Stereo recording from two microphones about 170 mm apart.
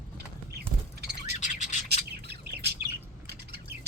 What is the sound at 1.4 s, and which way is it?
Bird, 45° left (ahead or behind).